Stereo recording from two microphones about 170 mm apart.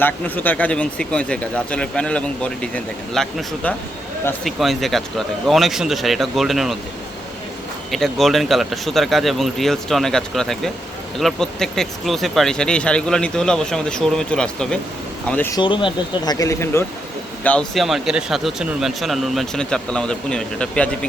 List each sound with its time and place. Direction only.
0.0 s speech: 10° left (ahead or behind)
7.9 s speech: centre (ahead or behind)
15.5 s speech: 30° left (ahead or behind)
17.4 s speech: 5° left (ahead or behind)